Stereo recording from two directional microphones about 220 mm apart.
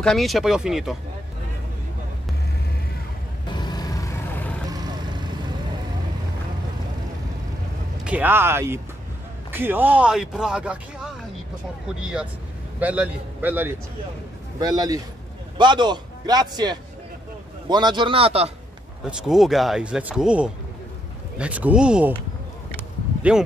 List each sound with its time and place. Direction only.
0.0 s a man's voice: centre (ahead or behind)
3.5 s vehicle: 20° left (ahead or behind)
4.6 s vehicle: 20° right (ahead or behind)
8.0 s a man's voice: 5° right (ahead or behind); by 18.5 s 25° right (ahead or behind)
19.0 s a man's voice: centre (ahead or behind)